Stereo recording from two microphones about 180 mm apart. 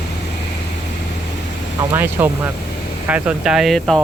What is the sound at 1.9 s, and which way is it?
Speech, 10° right (ahead or behind).